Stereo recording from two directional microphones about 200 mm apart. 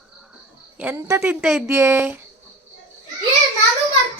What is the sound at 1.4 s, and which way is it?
Speech, centre (ahead or behind).